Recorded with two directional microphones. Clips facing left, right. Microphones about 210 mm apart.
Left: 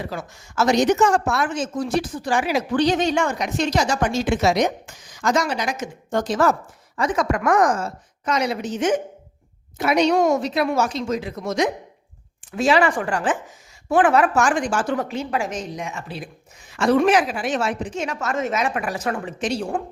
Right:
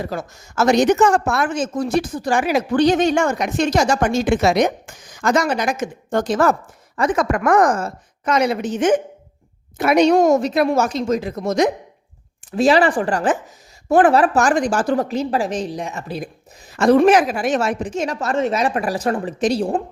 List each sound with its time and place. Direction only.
0.0 s a woman's voice: 45° right (ahead or behind)